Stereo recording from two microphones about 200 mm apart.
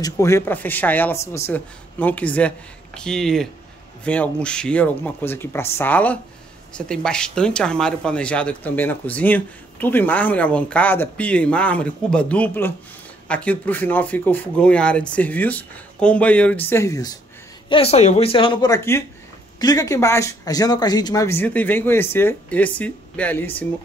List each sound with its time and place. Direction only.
0.0 s speech: 15° left (ahead or behind)
17.6 s a woman's voice: 30° left (ahead or behind); by 23.7 s 10° left (ahead or behind)